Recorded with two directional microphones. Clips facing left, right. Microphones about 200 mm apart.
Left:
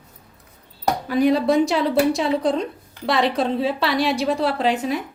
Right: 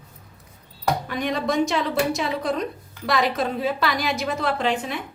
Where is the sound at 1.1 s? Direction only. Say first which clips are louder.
Left 7 dB; 35° left (ahead or behind).